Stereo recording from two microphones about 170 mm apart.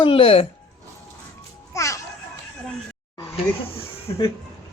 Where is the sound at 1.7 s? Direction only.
15° left (ahead or behind).